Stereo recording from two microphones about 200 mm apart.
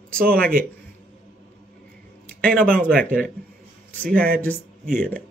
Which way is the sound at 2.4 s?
5° left (ahead or behind).